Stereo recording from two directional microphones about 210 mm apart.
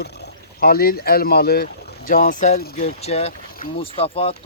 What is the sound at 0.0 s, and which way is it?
Speech, 50° left (ahead or behind).